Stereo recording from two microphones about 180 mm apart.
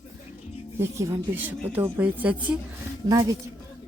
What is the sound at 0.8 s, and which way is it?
A woman's voice, 15° right (ahead or behind).